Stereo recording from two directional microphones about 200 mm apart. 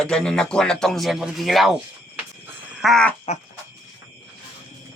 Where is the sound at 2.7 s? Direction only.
Centre (ahead or behind).